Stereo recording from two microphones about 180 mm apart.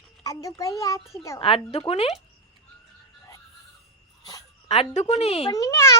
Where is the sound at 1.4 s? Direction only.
35° left (ahead or behind).